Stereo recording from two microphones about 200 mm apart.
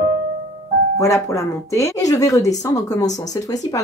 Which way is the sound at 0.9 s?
15° left (ahead or behind).